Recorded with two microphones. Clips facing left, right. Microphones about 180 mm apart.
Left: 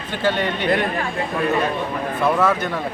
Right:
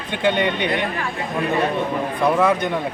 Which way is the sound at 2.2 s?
15° right (ahead or behind).